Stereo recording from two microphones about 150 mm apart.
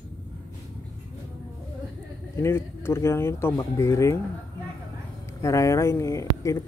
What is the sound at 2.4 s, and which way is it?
Speech, 15° left (ahead or behind).